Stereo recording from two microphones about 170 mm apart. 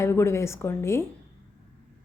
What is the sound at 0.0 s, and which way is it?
A woman's voice, 15° left (ahead or behind).